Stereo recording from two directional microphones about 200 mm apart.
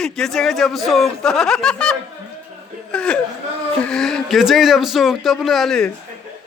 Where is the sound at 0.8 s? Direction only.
Centre (ahead or behind).